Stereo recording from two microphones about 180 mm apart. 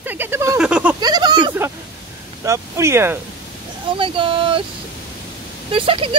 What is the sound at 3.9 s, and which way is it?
Speech, 30° right (ahead or behind).